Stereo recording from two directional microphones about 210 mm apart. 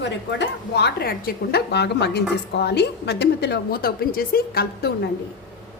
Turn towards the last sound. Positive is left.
turn(degrees=45)  # may be behind; listen again after turning